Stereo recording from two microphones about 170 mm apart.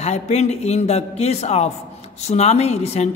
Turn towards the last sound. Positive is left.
turn(degrees=40)  # may be behind; listen again after turning